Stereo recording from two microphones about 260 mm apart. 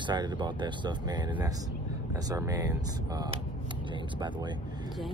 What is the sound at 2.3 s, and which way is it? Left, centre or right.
Speech, centre.